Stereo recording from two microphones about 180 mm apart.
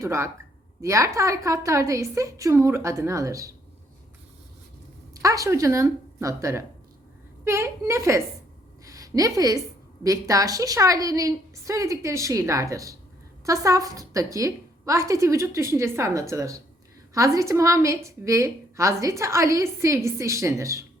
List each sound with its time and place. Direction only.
0.0 s a woman's voice: 15° right (ahead or behind)
5.2 s a woman's voice: 20° right (ahead or behind)
8.8 s a sound: 20° right (ahead or behind)
10.0 s a woman's voice: 20° right (ahead or behind)